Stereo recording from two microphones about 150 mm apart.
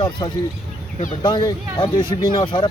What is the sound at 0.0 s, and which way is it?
Speech, 30° left (ahead or behind).